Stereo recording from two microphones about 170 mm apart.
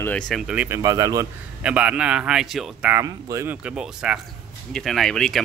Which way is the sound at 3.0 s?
20° right (ahead or behind).